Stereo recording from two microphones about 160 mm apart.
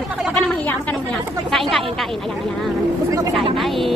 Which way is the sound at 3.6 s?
Centre (ahead or behind).